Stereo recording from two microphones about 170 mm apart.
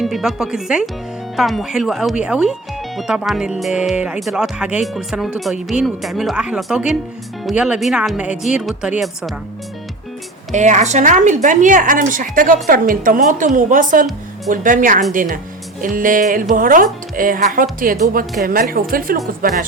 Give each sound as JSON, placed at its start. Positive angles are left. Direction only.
{"t": 0.0, "sound": "speech", "side_deg": 0}
{"t": 10.5, "sound": "a woman's voice", "side_deg": -45}